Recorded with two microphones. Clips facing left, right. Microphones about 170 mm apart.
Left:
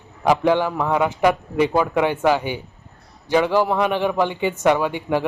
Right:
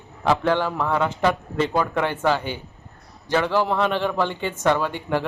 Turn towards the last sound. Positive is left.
turn(degrees=15)  # may be behind; listen again after turning